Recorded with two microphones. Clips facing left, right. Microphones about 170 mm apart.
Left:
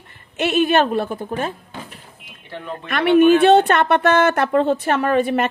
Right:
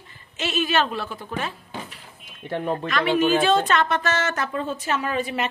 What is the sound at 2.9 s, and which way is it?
Speech, 60° left (ahead or behind).